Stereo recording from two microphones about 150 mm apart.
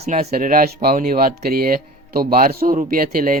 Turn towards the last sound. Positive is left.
turn(degrees=-70)  # may be behind; listen again after turning